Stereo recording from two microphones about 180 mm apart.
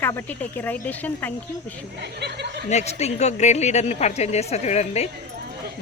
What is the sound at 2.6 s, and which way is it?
Speech, 40° left (ahead or behind).